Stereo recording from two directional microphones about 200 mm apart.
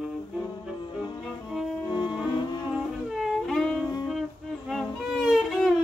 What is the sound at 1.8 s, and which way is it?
Music, 20° left (ahead or behind).